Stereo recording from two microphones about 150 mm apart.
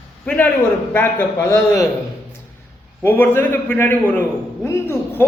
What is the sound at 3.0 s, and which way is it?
A man's voice, 15° left (ahead or behind).